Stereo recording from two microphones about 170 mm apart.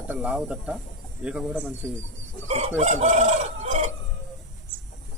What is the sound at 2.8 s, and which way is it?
Chicken, 40° right (ahead or behind).